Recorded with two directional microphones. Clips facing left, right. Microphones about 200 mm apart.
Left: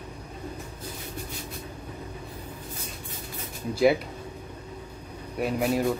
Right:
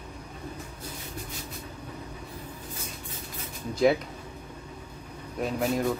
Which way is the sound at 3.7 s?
5° left (ahead or behind).